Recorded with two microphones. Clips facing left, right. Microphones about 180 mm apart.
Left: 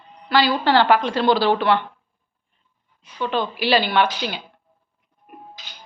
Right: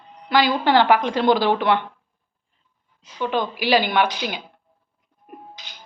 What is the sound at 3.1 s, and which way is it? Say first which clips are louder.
Speech: even; 15° right (ahead or behind).